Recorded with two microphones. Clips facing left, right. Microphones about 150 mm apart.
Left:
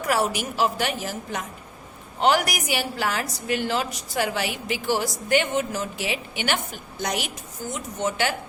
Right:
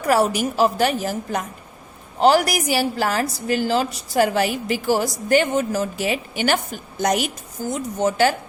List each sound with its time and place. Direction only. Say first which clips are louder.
0.1 s a woman's voice: right 6 dB; 40° right (ahead or behind)